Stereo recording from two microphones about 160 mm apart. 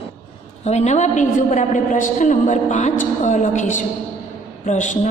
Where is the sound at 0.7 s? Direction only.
45° left (ahead or behind).